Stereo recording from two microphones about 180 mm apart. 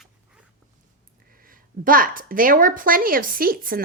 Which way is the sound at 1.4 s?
50° right (ahead or behind).